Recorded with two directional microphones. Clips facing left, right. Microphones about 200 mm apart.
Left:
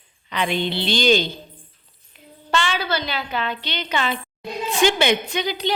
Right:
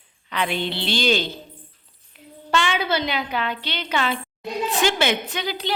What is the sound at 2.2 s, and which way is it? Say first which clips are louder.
Child singing: right 2 dB; 5° right (ahead or behind).